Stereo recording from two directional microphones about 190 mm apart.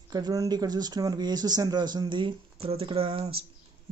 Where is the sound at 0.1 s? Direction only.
20° right (ahead or behind).